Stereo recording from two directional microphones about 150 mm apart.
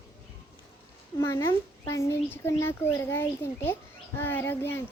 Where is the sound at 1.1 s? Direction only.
15° left (ahead or behind).